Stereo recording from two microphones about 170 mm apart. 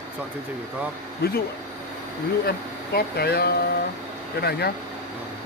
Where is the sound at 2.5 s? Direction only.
65° left (ahead or behind).